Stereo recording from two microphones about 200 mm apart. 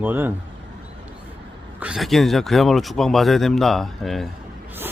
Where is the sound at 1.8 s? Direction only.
Centre (ahead or behind).